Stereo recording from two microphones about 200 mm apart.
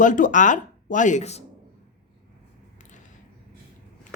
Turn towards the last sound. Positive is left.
turn(degrees=40)  # may be behind; listen again after turning